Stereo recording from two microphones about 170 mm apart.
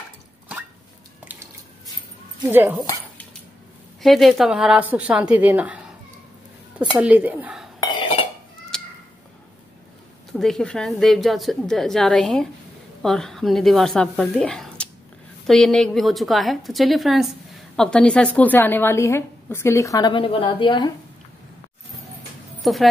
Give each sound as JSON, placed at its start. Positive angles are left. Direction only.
{"t": 2.5, "sound": "a woman's voice", "side_deg": -10}
{"t": 4.0, "sound": "a woman's voice", "side_deg": 0}
{"t": 8.0, "sound": "dishes", "side_deg": 30}
{"t": 8.7, "sound": "cat", "side_deg": 5}
{"t": 10.3, "sound": "a woman's voice", "side_deg": 5}
{"t": 22.6, "sound": "speech", "side_deg": 0}